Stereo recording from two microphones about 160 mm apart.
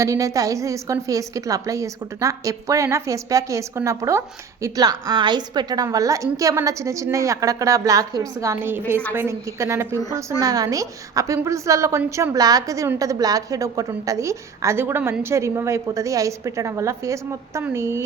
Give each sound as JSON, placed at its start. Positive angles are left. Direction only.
{"t": 0.0, "sound": "a woman's voice", "side_deg": -20}